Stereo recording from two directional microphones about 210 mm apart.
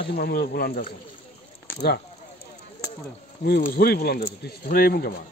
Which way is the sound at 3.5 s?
45° left (ahead or behind).